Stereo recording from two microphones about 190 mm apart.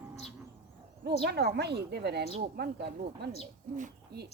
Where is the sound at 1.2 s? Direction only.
60° right (ahead or behind).